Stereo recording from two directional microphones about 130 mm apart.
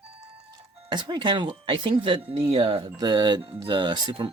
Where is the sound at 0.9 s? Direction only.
35° right (ahead or behind).